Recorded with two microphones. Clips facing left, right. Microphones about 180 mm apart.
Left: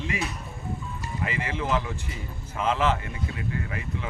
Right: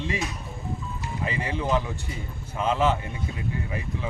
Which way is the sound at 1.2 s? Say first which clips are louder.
Right 1 dB; 15° right (ahead or behind).